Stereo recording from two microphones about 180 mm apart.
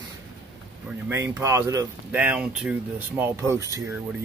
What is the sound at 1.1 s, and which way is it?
Speech, 15° right (ahead or behind).